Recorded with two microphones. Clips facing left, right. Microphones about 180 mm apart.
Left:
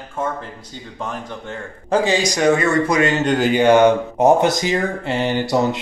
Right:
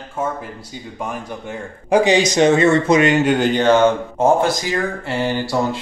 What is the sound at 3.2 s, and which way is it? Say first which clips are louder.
Speech: even; centre (ahead or behind).